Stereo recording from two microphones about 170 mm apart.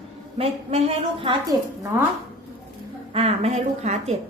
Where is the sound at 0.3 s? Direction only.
35° right (ahead or behind).